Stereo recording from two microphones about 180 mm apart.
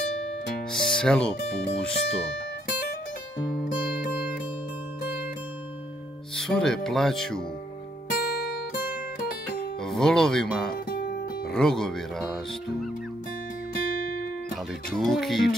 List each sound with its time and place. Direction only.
0.7 s speech: 5° left (ahead or behind)
6.3 s speech: 5° left (ahead or behind)
8.1 s music: 55° left (ahead or behind)
9.8 s speech: 5° left (ahead or behind)
14.9 s speech: centre (ahead or behind)